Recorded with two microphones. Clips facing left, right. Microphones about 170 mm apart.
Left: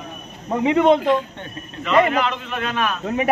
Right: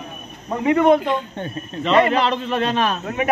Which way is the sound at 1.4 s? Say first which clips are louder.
Right 6 dB; 35° right (ahead or behind).